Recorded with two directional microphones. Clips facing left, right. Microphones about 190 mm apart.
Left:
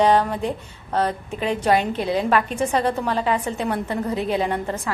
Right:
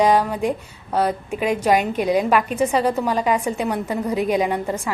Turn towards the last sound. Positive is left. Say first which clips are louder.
# right 2 dB
turn(degrees=-10)  # may be behind; listen again after turning